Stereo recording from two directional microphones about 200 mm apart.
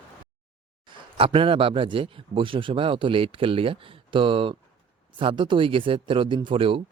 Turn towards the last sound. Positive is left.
turn(degrees=-25)  # may be behind; listen again after turning